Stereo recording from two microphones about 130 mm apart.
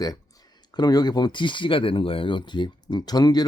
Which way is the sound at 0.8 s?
30° left (ahead or behind).